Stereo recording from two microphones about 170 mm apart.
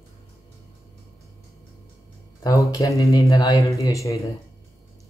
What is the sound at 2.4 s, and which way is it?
Speech, 20° left (ahead or behind).